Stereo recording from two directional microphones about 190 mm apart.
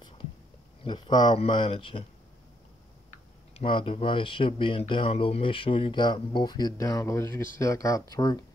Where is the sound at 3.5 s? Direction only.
30° left (ahead or behind).